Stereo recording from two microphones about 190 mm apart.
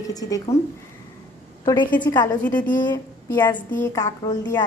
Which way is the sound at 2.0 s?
20° left (ahead or behind).